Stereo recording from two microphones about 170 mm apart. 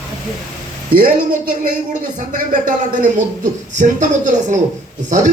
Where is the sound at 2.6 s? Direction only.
50° right (ahead or behind).